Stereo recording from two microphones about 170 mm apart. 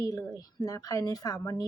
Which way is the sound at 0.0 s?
20° left (ahead or behind).